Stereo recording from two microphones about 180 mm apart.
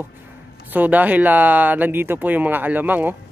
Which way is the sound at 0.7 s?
10° right (ahead or behind).